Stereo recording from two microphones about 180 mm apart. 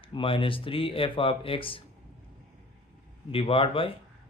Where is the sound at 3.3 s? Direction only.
30° left (ahead or behind).